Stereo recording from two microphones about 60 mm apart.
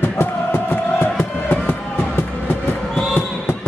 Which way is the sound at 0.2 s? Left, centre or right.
Left.